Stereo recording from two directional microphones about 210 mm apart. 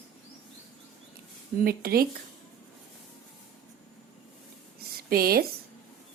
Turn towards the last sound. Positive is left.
turn(degrees=-45)  # may be behind; listen again after turning